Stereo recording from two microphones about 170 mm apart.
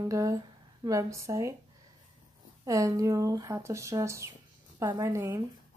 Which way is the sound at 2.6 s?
20° right (ahead or behind).